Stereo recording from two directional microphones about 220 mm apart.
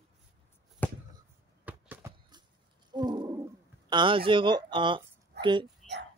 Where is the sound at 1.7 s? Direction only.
10° right (ahead or behind).